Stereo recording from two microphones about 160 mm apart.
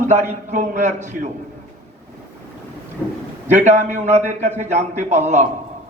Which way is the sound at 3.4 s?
45° right (ahead or behind).